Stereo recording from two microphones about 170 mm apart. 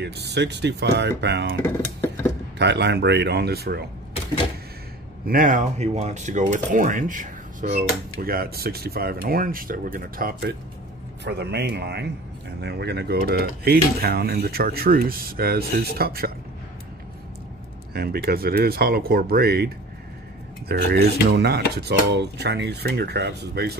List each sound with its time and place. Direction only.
0.0 s speech: 80° right
2.6 s a man's voice: 90° right; by 3.8 s 70° right (ahead or behind)
5.2 s speech: 55° right (ahead or behind)
11.2 s a man's voice: 75° right (ahead or behind)
17.9 s a man's voice: 65° right (ahead or behind)